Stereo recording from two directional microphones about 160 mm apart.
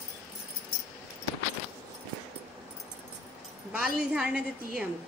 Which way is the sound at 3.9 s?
5° right (ahead or behind).